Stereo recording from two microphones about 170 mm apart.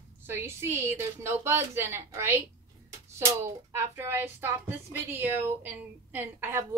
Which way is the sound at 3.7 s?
15° right (ahead or behind).